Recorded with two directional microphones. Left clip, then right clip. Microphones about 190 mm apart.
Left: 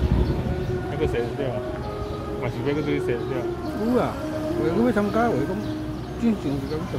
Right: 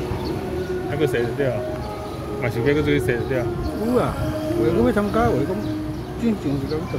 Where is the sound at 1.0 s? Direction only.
60° right (ahead or behind).